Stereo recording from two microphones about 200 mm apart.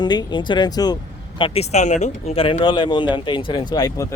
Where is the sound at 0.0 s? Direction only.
20° left (ahead or behind).